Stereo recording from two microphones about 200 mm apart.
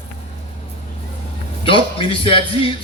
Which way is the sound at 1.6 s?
25° left (ahead or behind).